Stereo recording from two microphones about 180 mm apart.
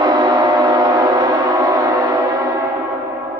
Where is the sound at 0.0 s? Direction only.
25° right (ahead or behind).